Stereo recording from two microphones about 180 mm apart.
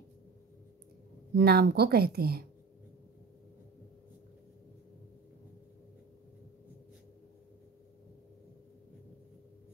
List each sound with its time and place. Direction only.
1.3 s speech: 65° right (ahead or behind)